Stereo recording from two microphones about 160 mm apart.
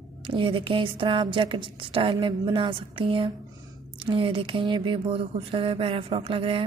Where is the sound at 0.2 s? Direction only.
30° right (ahead or behind).